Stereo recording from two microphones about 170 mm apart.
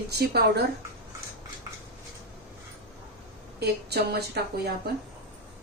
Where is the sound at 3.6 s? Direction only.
70° right (ahead or behind).